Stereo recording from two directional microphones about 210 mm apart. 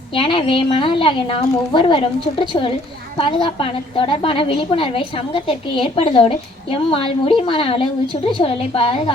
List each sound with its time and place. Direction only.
0.1 s a woman's voice: 25° left (ahead or behind)